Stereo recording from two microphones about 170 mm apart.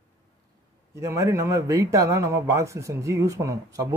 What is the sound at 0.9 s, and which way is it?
A man's voice, 15° right (ahead or behind).